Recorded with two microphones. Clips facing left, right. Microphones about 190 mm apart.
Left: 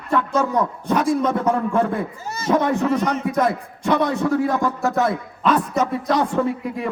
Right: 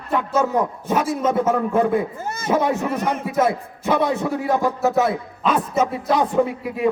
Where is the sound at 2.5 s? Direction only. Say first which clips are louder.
Left 2 dB; 10° right (ahead or behind).